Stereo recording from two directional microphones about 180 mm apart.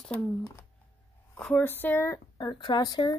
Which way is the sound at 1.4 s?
10° left (ahead or behind).